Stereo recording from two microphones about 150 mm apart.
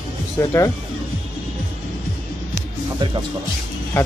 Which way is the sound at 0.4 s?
20° left (ahead or behind).